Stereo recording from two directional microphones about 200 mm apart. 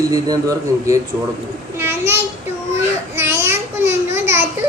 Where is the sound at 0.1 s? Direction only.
20° right (ahead or behind).